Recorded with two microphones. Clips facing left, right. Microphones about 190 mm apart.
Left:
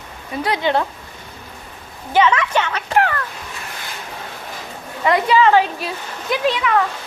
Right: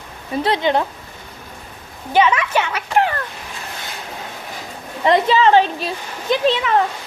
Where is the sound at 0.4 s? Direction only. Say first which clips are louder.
Right 1 dB; 20° right (ahead or behind).